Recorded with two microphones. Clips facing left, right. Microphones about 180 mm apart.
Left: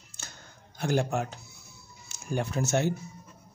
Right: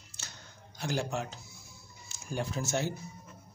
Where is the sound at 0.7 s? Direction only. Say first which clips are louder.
Left 6 dB; 55° left (ahead or behind).